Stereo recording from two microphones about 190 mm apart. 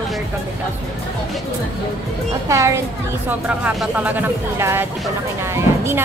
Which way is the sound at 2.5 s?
15° right (ahead or behind).